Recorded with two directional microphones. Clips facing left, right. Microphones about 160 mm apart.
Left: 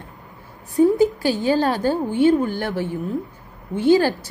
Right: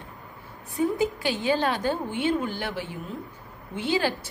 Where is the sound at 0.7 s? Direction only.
40° left (ahead or behind).